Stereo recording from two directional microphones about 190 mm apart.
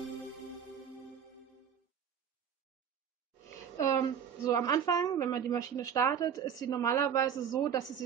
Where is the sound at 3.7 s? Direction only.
15° left (ahead or behind).